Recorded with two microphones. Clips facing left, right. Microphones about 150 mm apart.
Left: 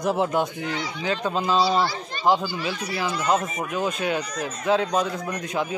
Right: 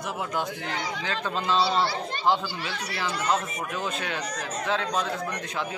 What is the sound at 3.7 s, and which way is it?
Speech, 15° left (ahead or behind).